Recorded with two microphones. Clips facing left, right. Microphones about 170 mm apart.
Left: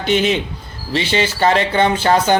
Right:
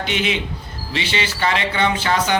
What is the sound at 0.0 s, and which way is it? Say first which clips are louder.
A man's voice: left 6 dB; 40° left (ahead or behind).